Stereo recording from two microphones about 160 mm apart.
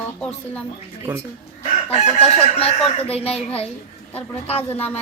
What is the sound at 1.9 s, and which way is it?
Speech, 40° left (ahead or behind).